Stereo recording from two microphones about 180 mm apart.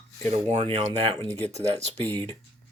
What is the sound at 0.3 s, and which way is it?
Speech, 35° right (ahead or behind).